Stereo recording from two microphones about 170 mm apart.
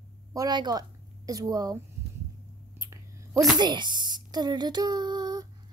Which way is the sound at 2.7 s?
20° right (ahead or behind).